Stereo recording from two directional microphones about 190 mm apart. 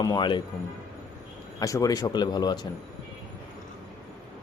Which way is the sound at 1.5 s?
15° left (ahead or behind).